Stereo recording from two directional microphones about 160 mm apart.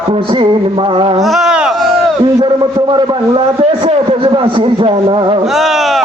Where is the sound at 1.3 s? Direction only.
5° right (ahead or behind).